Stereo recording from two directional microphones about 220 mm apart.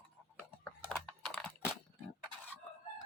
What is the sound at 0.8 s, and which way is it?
Computer keyboard, centre (ahead or behind).